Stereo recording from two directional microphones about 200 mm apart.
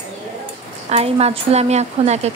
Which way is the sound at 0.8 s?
30° right (ahead or behind).